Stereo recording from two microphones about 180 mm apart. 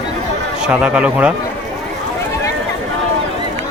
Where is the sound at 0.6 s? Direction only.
5° right (ahead or behind).